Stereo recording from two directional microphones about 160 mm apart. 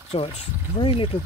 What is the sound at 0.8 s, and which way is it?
Speech, 35° left (ahead or behind).